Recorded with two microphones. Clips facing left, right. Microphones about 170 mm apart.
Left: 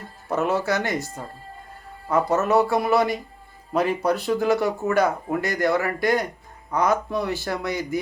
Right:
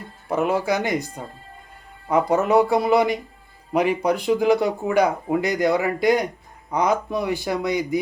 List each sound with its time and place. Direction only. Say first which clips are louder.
0.3 s speech: right 2 dB; 10° right (ahead or behind)